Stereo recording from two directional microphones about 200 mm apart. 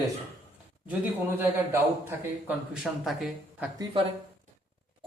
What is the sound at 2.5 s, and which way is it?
A man's voice, 5° right (ahead or behind).